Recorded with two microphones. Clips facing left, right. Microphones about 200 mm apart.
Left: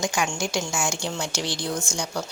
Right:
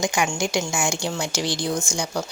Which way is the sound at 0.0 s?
10° right (ahead or behind).